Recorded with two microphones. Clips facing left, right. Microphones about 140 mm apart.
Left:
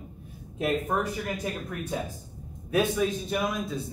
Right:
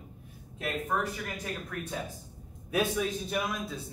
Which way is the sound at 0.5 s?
20° left (ahead or behind).